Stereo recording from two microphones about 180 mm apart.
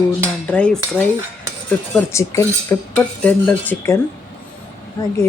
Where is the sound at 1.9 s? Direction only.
15° left (ahead or behind).